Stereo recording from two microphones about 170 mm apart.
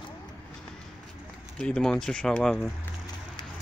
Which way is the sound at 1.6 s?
5° left (ahead or behind).